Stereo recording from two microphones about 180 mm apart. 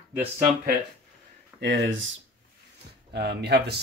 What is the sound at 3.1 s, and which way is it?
Speech, 65° right (ahead or behind).